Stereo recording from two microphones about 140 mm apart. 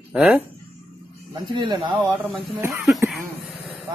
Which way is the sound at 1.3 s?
35° right (ahead or behind).